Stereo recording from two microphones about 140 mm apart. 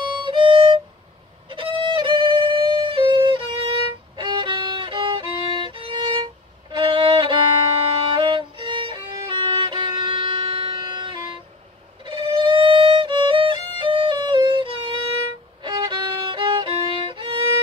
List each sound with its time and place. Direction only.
0.0 s music: 35° right (ahead or behind)
4.2 s violin: 35° right (ahead or behind)